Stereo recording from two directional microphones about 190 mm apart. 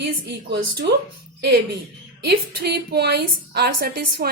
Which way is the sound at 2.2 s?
60° right (ahead or behind).